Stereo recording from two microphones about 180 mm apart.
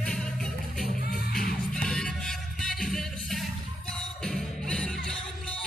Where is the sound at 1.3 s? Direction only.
55° left (ahead or behind).